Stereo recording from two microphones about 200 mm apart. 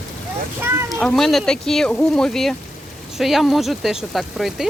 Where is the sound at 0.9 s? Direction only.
Centre (ahead or behind).